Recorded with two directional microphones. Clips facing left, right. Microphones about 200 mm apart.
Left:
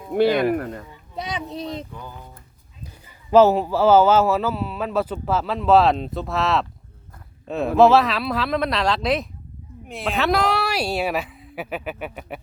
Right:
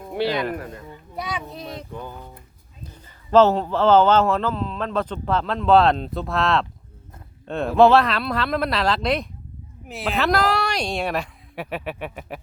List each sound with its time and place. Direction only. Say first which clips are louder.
0.1 s speech: left 6 dB; 50° left (ahead or behind)
1.1 s a child's voice: left 2 dB; 20° left (ahead or behind)
1.9 s speech: right 4 dB; 20° right (ahead or behind)
3.3 s a man's voice: left 1 dB; 10° left (ahead or behind)